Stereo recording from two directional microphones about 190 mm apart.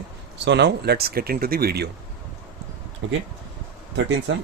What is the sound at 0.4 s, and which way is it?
Speech, 65° right (ahead or behind).